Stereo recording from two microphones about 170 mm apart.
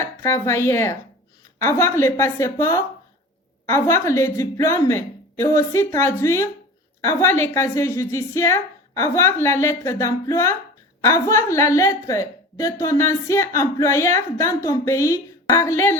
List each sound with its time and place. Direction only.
0.0 s a woman's voice: 15° left (ahead or behind)